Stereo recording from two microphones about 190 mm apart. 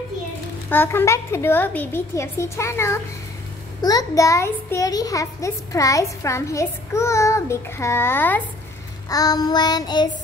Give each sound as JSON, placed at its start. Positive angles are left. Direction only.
{"t": 0.7, "sound": "a child's voice", "side_deg": 10}
{"t": 9.1, "sound": "child singing", "side_deg": 20}